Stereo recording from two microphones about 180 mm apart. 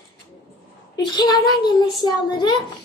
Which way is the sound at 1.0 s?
25° left (ahead or behind).